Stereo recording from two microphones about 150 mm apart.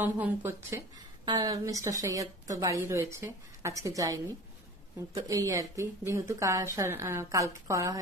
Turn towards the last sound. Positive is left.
turn(degrees=-20)  # may be behind; listen again after turning